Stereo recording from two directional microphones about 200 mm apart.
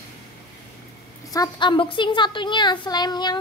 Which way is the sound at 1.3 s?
20° left (ahead or behind).